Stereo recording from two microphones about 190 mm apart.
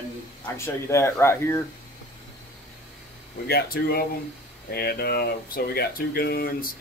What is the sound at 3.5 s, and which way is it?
Speech, 55° left (ahead or behind).